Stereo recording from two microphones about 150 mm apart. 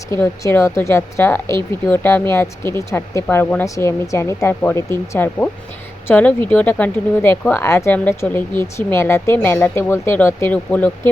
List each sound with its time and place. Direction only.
0.1 s a woman's voice: 15° left (ahead or behind)